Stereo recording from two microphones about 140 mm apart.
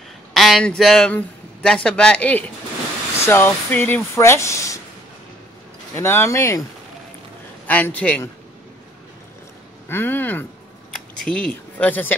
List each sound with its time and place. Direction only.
0.3 s a man's voice: centre (ahead or behind); by 4.7 s 20° left (ahead or behind)
5.9 s speech: 20° left (ahead or behind)
7.6 s speech: 10° left (ahead or behind)
9.8 s speech: 15° left (ahead or behind)